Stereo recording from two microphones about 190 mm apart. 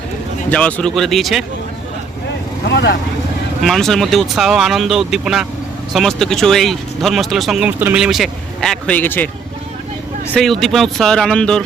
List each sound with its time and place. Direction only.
0.5 s speech: 5° left (ahead or behind)
2.6 s speech: 60° left (ahead or behind)
3.6 s speech: centre (ahead or behind)
10.3 s speech: centre (ahead or behind)